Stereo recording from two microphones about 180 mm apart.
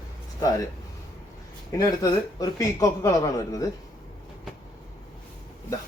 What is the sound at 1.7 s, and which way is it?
Speech, 20° left (ahead or behind).